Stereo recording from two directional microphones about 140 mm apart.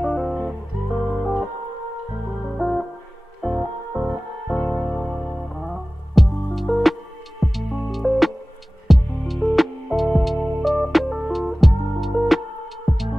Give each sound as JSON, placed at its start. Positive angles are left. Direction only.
{"t": 0.0, "sound": "music", "side_deg": 0}
{"t": 1.1, "sound": "organ", "side_deg": 0}
{"t": 3.4, "sound": "music", "side_deg": 0}